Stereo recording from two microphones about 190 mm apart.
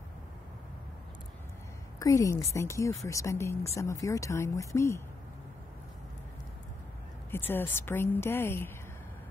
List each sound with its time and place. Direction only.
2.0 s speech: 15° left (ahead or behind)
7.2 s speech: 10° left (ahead or behind)